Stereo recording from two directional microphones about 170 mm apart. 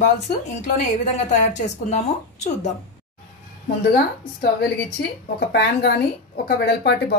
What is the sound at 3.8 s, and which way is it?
Speech, 70° left (ahead or behind).